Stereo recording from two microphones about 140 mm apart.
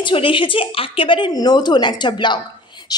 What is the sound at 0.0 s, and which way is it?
A woman's voice, 40° left (ahead or behind).